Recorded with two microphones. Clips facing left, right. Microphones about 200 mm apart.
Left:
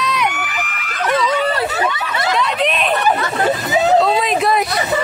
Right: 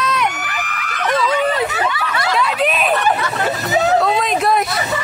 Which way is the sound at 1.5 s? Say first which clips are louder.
Even; 20° right (ahead or behind).